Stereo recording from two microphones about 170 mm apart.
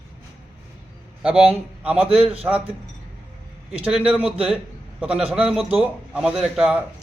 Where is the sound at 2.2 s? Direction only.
35° right (ahead or behind).